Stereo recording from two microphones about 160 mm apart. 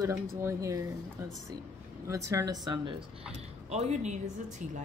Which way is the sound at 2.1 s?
20° right (ahead or behind).